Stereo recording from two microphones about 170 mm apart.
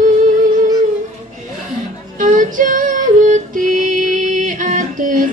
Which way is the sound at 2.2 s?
50° right (ahead or behind).